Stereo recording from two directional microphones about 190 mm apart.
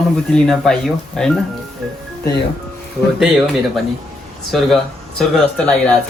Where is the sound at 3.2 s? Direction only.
Centre (ahead or behind).